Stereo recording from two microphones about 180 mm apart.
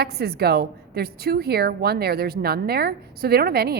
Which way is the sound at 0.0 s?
60° right (ahead or behind).